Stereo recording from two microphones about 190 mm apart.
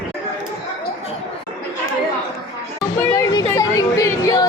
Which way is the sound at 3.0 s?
15° left (ahead or behind).